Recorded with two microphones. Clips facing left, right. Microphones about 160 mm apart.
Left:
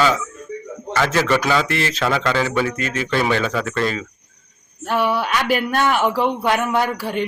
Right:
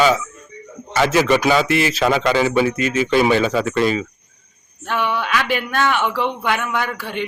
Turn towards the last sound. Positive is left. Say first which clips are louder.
# left 4 dB
turn(degrees=40)  # may be behind; listen again after turning